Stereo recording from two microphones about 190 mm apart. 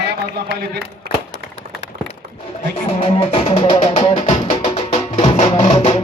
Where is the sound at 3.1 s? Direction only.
30° left (ahead or behind).